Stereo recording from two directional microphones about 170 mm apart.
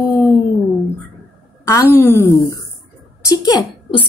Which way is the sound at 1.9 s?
15° left (ahead or behind).